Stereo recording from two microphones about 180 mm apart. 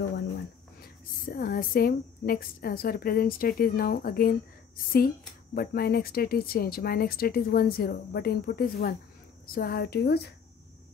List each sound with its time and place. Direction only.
1.2 s a woman's voice: 55° left (ahead or behind)